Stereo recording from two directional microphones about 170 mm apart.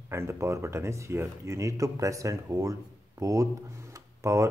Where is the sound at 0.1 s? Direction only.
15° right (ahead or behind).